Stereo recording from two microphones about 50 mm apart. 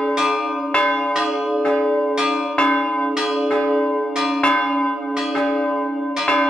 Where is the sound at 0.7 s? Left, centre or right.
Centre.